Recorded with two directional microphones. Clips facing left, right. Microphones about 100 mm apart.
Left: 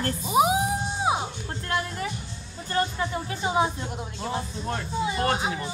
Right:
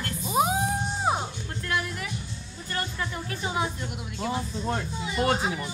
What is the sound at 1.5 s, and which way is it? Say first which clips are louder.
A woman's voice: left 1 dB; 30° left (ahead or behind).